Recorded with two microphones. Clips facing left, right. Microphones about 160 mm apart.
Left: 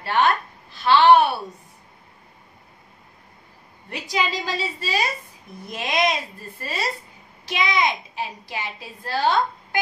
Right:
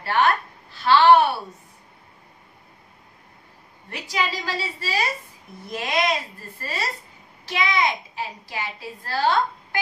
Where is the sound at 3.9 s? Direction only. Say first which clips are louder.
Left 2 dB; 20° left (ahead or behind).